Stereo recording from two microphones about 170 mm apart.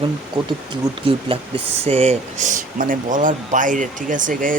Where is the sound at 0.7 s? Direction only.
30° right (ahead or behind).